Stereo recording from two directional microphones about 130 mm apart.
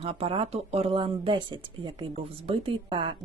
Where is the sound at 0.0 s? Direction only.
50° right (ahead or behind).